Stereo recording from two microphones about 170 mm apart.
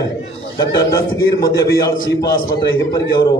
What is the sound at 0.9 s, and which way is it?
A man's voice, 20° left (ahead or behind).